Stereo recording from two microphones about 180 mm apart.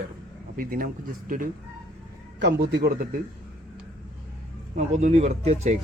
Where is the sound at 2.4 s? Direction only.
70° right (ahead or behind).